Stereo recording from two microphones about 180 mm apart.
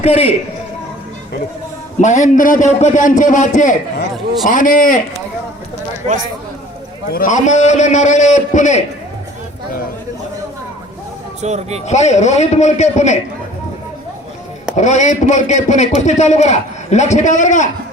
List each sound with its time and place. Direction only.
0.0 s a man's voice: 35° left (ahead or behind)
2.0 s a man's voice: 40° left (ahead or behind)
7.1 s a man's voice: 45° left (ahead or behind)
11.4 s speech: 40° right (ahead or behind)
11.9 s a man's voice: 40° left (ahead or behind)
14.8 s a man's voice: 40° left (ahead or behind)